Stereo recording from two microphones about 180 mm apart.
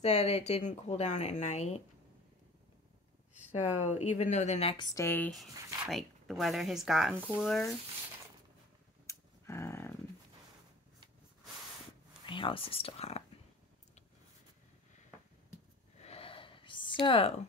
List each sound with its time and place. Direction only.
0.0 s a woman's voice: 35° left (ahead or behind)
3.3 s a woman's voice: 40° left (ahead or behind)
4.9 s speech: 10° left (ahead or behind)
5.9 s speech: centre (ahead or behind)
9.0 s a sound: 15° left (ahead or behind)
12.3 s a woman's voice: 30° left (ahead or behind)
16.0 s a sound: 35° left (ahead or behind)